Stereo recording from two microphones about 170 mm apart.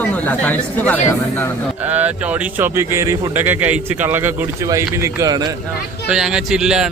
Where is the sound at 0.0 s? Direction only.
10° left (ahead or behind).